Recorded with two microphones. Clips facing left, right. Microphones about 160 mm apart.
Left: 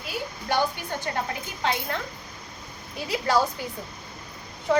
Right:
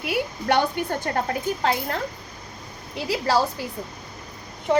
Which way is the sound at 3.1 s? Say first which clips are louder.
Right 2 dB; 30° right (ahead or behind).